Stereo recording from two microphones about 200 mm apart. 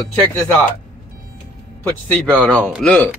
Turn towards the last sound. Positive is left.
turn(degrees=5)  # may be behind; listen again after turning